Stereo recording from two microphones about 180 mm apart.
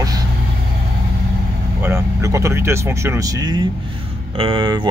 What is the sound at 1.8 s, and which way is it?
Speech, 15° right (ahead or behind).